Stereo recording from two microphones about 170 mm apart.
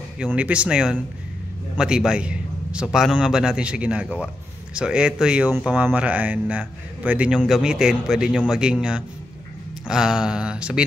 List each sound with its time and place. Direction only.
0.2 s speech: 5° right (ahead or behind)